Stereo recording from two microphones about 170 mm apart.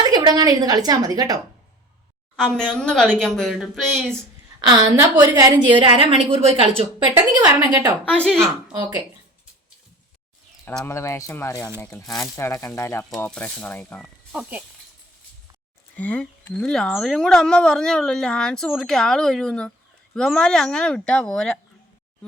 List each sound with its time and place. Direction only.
0.0 s speech: 25° right (ahead or behind)
2.3 s speech: 5° left (ahead or behind)
4.8 s a woman's voice: 20° right (ahead or behind); by 6.9 s 35° right (ahead or behind)
7.2 s speech: 20° right (ahead or behind)
8.0 s speech: 5° left (ahead or behind)
10.7 s speech: 15° left (ahead or behind)
16.0 s speech: 10° left (ahead or behind)